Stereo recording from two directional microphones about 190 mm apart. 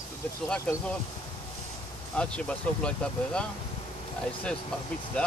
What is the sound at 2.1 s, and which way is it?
Speech, 5° left (ahead or behind).